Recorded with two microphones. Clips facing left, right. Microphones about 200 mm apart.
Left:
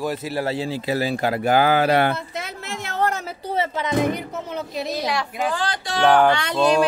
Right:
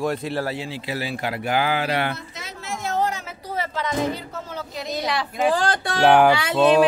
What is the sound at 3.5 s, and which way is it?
Speech, 20° left (ahead or behind).